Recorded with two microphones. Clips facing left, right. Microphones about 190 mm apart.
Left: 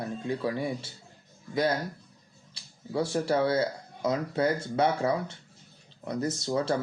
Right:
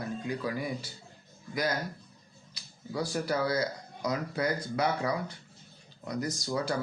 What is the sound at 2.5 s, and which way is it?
Speech, 25° left (ahead or behind).